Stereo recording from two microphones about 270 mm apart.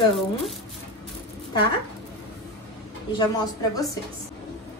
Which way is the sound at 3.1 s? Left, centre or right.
Centre.